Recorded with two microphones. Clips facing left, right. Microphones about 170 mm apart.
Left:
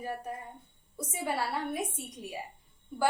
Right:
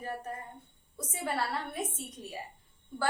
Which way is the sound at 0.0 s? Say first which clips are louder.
Left 1 dB; 10° left (ahead or behind).